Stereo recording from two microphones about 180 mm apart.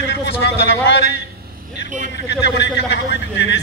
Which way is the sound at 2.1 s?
75° left (ahead or behind).